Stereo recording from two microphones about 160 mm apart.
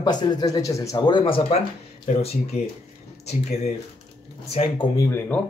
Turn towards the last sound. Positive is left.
turn(degrees=15)  # may be behind; listen again after turning